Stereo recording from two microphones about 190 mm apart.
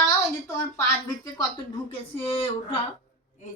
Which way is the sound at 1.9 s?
30° left (ahead or behind).